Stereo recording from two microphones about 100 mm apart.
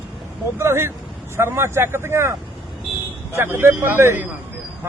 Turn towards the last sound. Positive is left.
turn(degrees=-20)  # may be behind; listen again after turning